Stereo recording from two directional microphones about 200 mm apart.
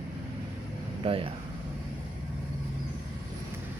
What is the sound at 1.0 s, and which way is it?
Speech, 25° right (ahead or behind).